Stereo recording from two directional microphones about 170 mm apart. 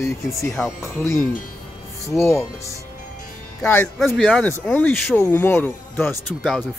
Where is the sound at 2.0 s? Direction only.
15° left (ahead or behind).